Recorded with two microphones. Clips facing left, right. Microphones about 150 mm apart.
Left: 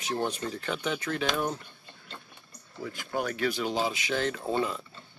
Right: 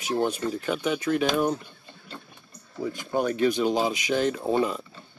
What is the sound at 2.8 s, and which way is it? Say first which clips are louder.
Speech: right 6 dB; 20° right (ahead or behind).